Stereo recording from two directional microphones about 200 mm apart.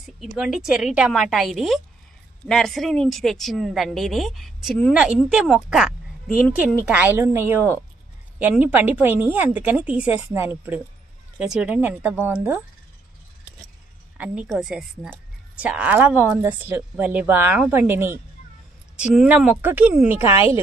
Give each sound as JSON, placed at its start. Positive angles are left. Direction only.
{"t": 0.0, "sound": "a woman's voice", "side_deg": 0}
{"t": 14.1, "sound": "a woman's voice", "side_deg": -5}